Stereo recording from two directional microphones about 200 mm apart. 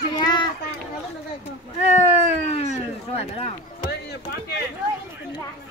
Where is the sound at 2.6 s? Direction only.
30° left (ahead or behind).